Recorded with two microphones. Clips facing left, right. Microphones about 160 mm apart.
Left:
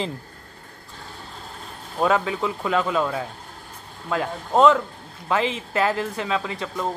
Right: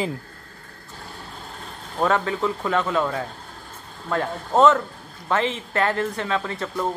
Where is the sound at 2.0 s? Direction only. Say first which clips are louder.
Even; 10° left (ahead or behind).